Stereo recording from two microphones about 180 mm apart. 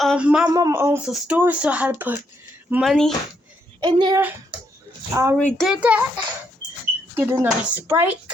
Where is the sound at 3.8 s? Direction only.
25° right (ahead or behind).